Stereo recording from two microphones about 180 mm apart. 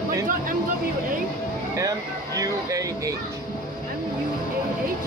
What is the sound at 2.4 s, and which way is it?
Speech, 20° right (ahead or behind).